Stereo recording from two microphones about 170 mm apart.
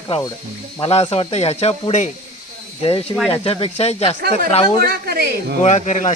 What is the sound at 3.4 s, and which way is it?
Speech, 35° left (ahead or behind).